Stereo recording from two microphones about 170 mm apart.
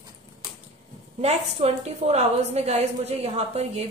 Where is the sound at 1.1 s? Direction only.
40° right (ahead or behind).